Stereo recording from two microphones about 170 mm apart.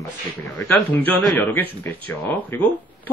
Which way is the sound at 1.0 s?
10° left (ahead or behind).